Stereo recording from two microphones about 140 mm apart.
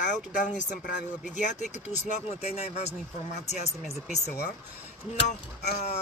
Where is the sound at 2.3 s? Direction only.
50° left (ahead or behind).